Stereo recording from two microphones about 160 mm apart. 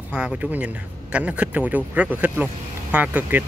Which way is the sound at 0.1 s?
5° right (ahead or behind).